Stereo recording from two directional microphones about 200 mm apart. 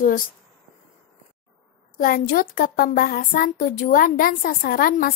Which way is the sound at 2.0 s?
45° left (ahead or behind).